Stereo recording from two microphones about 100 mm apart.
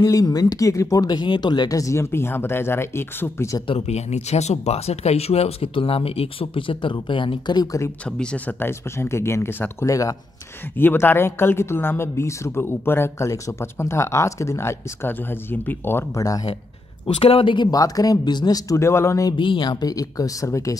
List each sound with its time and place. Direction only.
0.0 s speech: 40° left (ahead or behind)
3.6 s speech: 80° left; by 7.9 s 35° left (ahead or behind)
8.2 s speech: 10° left (ahead or behind)
8.5 s speech: 25° left (ahead or behind)
10.8 s speech: 20° left (ahead or behind)
17.0 s speech: 70° left (ahead or behind)
17.6 s speech: 40° left (ahead or behind)
19.3 s speech: 55° left (ahead or behind); by 20.7 s 30° left (ahead or behind)